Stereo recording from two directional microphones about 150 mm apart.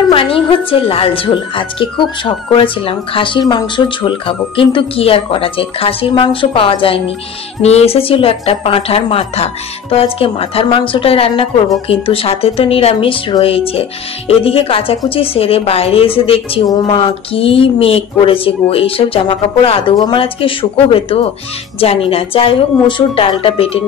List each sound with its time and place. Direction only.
0.1 s a woman's voice: 35° left (ahead or behind)